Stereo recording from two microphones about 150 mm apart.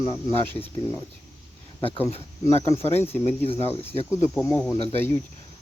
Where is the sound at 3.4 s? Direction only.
40° left (ahead or behind).